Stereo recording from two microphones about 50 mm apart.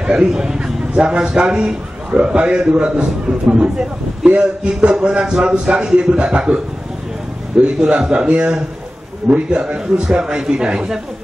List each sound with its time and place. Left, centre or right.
0.0 s a man's voice: centre
7.6 s a man's voice: centre